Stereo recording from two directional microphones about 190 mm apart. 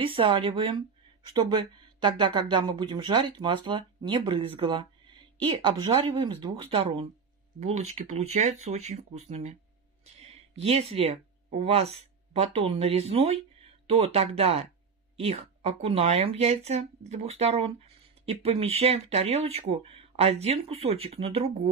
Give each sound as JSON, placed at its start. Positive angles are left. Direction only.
{"t": 0.0, "sound": "speech", "side_deg": -30}